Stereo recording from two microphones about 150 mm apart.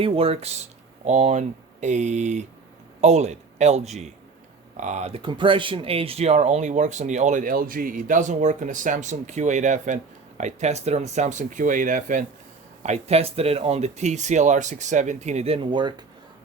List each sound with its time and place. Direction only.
0.0 s speech: 40° right (ahead or behind); by 12.2 s 60° right (ahead or behind)
12.8 s speech: 45° right (ahead or behind); by 16.0 s 30° right (ahead or behind)